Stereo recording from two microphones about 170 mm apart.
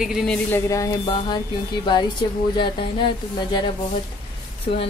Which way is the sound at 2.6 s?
30° left (ahead or behind).